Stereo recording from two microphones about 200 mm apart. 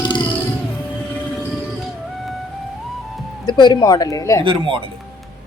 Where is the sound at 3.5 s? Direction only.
20° left (ahead or behind).